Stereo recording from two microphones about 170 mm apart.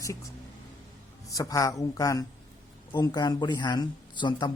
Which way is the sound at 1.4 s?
20° left (ahead or behind).